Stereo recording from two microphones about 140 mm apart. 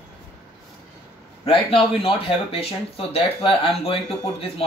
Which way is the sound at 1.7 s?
40° left (ahead or behind).